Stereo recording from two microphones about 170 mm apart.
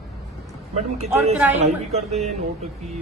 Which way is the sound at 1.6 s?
40° right (ahead or behind).